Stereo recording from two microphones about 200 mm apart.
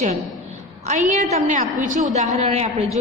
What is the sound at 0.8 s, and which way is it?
A woman's voice, 40° right (ahead or behind).